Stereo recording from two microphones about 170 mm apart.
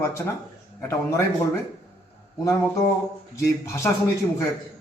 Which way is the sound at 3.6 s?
15° left (ahead or behind).